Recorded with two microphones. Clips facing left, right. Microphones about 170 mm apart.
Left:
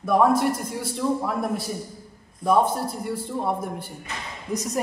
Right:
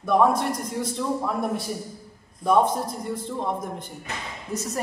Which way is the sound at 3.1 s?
10° left (ahead or behind).